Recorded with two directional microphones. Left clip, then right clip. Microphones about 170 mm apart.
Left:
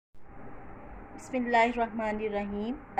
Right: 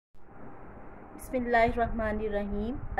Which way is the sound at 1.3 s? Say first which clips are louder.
Even; 20° right (ahead or behind).